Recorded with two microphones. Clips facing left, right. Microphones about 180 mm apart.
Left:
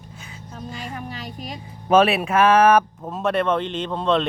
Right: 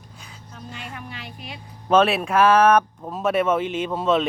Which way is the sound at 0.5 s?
40° left (ahead or behind).